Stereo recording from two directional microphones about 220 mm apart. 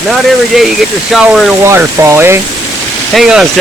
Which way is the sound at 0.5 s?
Centre (ahead or behind).